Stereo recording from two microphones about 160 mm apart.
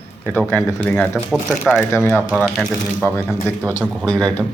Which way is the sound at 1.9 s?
15° left (ahead or behind).